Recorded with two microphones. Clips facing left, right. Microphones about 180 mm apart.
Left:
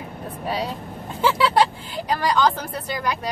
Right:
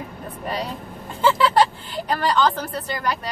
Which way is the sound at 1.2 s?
10° left (ahead or behind).